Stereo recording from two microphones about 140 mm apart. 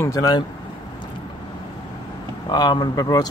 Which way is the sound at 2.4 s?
30° left (ahead or behind).